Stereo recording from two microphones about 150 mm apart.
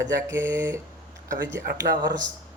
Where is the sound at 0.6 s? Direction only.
20° right (ahead or behind).